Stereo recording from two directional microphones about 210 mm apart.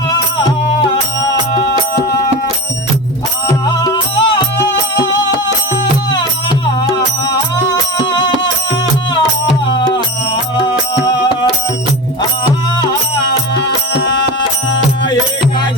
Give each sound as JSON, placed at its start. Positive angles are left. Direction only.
{"t": 3.7, "sound": "music", "side_deg": 20}
{"t": 9.6, "sound": "music", "side_deg": 20}